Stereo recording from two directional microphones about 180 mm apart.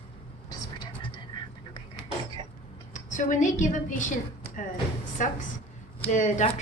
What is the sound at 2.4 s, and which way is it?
Cough, 25° right (ahead or behind).